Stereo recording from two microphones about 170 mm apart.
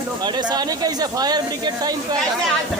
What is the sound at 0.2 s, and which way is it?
Speech, 25° right (ahead or behind).